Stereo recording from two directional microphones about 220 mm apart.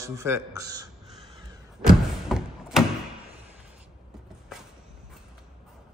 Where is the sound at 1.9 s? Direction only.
Centre (ahead or behind).